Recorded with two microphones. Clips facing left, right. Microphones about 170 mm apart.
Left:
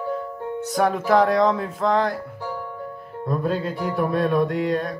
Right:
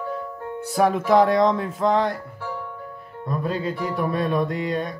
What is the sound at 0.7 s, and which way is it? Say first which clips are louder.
Music: right 1 dB; 5° right (ahead or behind).